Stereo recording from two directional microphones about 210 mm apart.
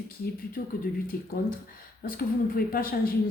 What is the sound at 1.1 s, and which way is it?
A woman's voice, 45° left (ahead or behind).